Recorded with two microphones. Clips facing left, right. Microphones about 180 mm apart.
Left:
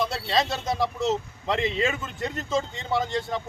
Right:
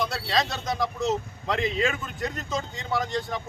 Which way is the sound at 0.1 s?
25° left (ahead or behind).